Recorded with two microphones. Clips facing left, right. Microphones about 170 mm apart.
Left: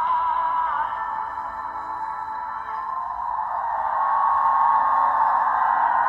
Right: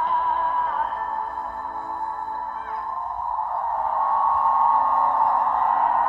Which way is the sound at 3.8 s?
10° right (ahead or behind).